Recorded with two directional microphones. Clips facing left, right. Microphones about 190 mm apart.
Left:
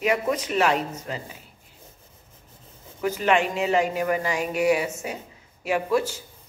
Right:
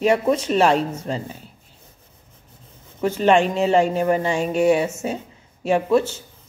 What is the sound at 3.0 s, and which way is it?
Speech, 30° right (ahead or behind).